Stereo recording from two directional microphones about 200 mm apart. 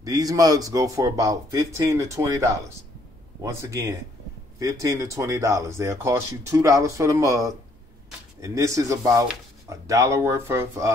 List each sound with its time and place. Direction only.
0.0 s speech: 20° right (ahead or behind)